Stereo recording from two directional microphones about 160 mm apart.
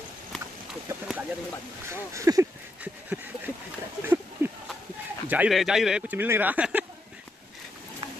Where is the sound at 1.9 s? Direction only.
20° right (ahead or behind).